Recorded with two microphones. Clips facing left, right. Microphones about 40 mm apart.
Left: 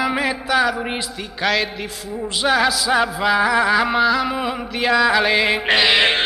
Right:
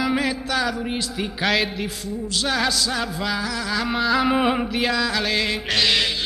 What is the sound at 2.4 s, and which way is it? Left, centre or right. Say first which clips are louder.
Music: left 6 dB; centre.